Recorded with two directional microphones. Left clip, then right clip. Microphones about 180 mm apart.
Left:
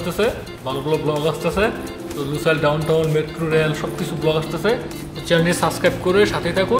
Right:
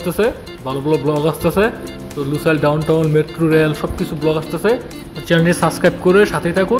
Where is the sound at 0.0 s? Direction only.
40° right (ahead or behind).